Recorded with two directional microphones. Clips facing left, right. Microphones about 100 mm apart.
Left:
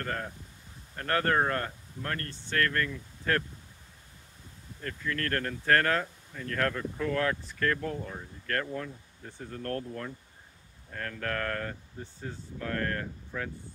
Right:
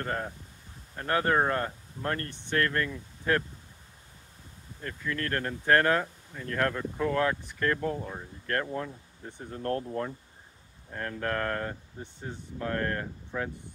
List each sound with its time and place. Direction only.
0.0 s speech: 25° right (ahead or behind)
4.8 s speech: 15° right (ahead or behind)